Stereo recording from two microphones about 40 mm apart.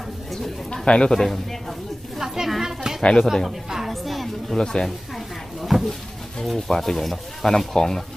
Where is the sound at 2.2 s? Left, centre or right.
Centre.